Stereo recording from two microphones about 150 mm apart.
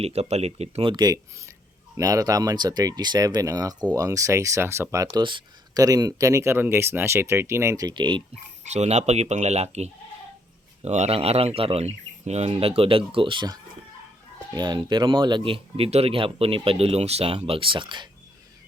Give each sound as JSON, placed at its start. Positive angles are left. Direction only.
{"t": 0.0, "sound": "speech", "side_deg": -45}
{"t": 5.1, "sound": "speech", "side_deg": -30}
{"t": 8.6, "sound": "speech", "side_deg": -50}
{"t": 10.8, "sound": "speech", "side_deg": -50}